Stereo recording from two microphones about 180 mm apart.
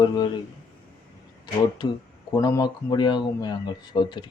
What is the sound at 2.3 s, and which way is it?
Speech, 20° left (ahead or behind).